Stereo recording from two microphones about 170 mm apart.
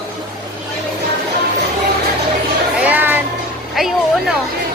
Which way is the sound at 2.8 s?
10° right (ahead or behind).